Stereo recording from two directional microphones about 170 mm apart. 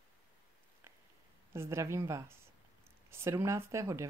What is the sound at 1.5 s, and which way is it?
Speech, 15° right (ahead or behind).